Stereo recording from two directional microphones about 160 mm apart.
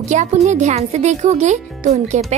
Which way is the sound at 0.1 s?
45° right (ahead or behind).